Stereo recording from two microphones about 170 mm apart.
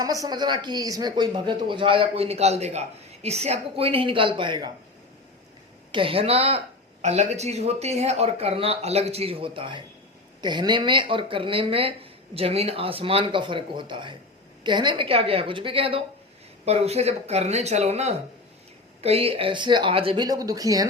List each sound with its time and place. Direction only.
0.0 s speech: 20° right (ahead or behind)
5.9 s speech: 30° right (ahead or behind)